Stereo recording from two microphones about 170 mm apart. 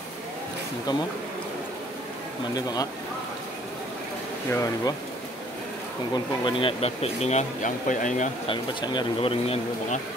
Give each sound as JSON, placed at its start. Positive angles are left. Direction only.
{"t": 2.5, "sound": "speech", "side_deg": 25}
{"t": 4.5, "sound": "speech", "side_deg": 20}
{"t": 6.1, "sound": "speech", "side_deg": 30}
{"t": 8.5, "sound": "speech", "side_deg": 30}